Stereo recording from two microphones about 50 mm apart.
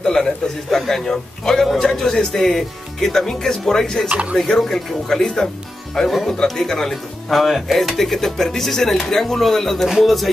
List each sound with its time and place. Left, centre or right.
0.0 s a man's voice: centre
4.1 s speech: right
4.4 s a man's voice: centre